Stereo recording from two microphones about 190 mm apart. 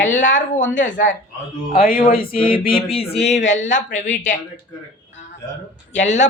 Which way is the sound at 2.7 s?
30° left (ahead or behind).